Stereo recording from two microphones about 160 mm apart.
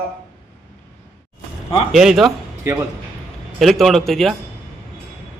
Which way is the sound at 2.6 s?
15° right (ahead or behind).